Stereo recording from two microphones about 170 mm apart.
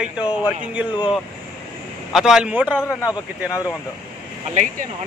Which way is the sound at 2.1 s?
5° right (ahead or behind).